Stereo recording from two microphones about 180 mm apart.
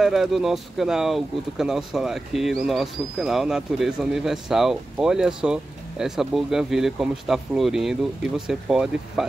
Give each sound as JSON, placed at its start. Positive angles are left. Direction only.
{"t": 0.0, "sound": "speech", "side_deg": 0}